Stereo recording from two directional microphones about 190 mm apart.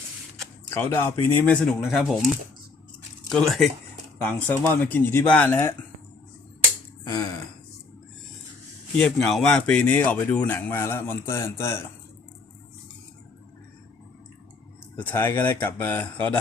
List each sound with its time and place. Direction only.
0.7 s a man's voice: 10° left (ahead or behind)
3.2 s a man's voice: centre (ahead or behind)
7.1 s a man's voice: 15° left (ahead or behind)
9.0 s a man's voice: 5° left (ahead or behind)
14.9 s a man's voice: 10° left (ahead or behind)